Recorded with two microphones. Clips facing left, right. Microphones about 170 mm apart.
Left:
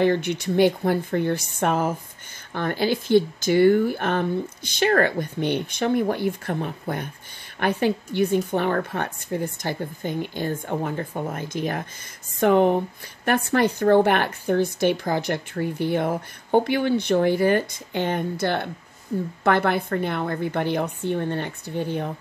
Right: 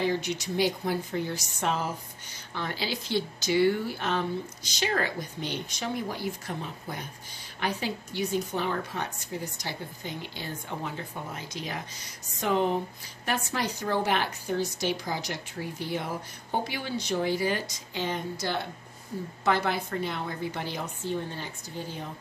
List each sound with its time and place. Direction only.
0.0 s a woman's voice: 60° left (ahead or behind)